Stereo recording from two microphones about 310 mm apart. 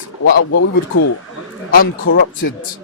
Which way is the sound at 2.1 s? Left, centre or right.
Left.